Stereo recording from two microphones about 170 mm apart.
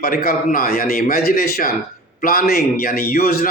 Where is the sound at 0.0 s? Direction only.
60° left (ahead or behind).